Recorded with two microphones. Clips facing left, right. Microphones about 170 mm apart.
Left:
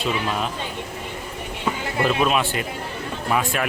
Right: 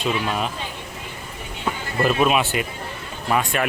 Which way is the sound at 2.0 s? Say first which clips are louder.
Right 2 dB; 5° right (ahead or behind).